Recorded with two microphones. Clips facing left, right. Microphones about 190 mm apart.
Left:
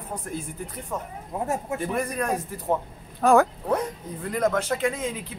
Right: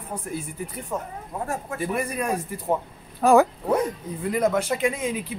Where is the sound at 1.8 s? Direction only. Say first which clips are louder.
Even; 5° right (ahead or behind).